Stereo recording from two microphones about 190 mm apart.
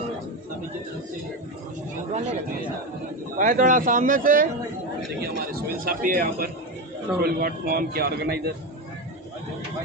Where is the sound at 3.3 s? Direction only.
45° right (ahead or behind).